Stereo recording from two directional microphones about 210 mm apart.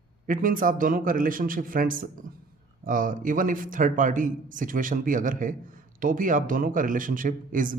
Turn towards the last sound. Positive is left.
turn(degrees=-40)  # may be behind; listen again after turning